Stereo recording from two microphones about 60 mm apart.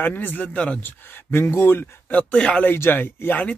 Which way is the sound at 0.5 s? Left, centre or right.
Left.